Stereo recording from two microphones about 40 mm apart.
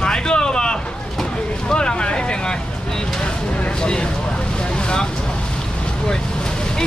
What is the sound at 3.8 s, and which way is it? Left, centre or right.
Speech, left.